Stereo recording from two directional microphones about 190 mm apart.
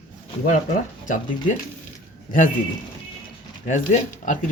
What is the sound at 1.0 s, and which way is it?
Speech, 40° left (ahead or behind).